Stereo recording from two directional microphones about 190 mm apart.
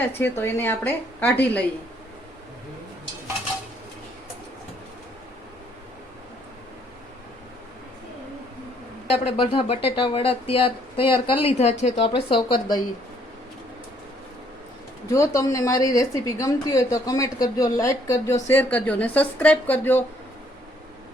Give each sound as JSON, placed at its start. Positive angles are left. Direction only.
{"t": 0.1, "sound": "a woman's voice", "side_deg": 10}
{"t": 9.0, "sound": "speech", "side_deg": 30}
{"t": 15.1, "sound": "a woman's voice", "side_deg": 15}